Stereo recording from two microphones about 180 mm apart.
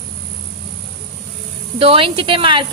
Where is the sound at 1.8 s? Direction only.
30° right (ahead or behind).